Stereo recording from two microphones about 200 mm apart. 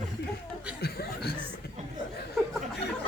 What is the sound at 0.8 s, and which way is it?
Chuckle, 55° left (ahead or behind).